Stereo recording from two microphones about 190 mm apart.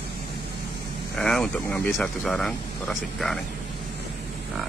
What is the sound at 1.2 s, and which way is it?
Speech, 5° left (ahead or behind).